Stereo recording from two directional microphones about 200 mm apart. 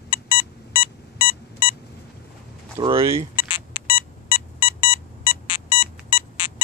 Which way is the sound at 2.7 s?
25° right (ahead or behind).